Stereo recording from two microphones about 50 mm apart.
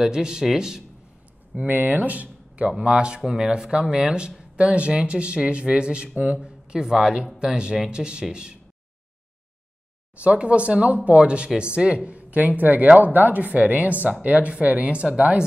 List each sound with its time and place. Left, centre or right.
0.0 s speech: centre
1.7 s speech: right
2.7 s speech: centre
10.1 s speech: right